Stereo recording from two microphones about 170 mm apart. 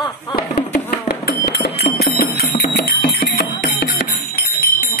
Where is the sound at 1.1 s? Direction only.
70° left (ahead or behind).